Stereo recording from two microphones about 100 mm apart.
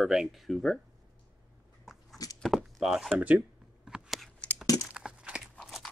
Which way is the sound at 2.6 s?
5° right (ahead or behind).